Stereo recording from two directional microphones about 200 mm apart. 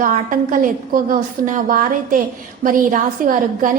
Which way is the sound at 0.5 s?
45° right (ahead or behind).